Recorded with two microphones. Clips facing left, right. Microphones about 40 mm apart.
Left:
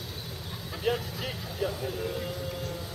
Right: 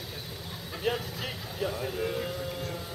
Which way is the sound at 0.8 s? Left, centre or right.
Centre.